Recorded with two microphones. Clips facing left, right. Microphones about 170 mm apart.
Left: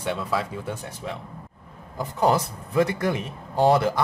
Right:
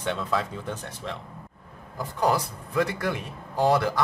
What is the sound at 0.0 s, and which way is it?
Speech, 5° left (ahead or behind).